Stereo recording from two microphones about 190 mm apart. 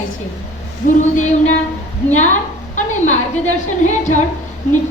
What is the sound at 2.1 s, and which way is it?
A woman's voice, 40° left (ahead or behind).